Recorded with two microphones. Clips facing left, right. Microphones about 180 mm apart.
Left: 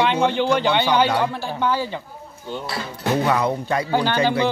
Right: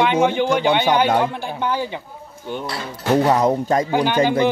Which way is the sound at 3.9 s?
15° right (ahead or behind).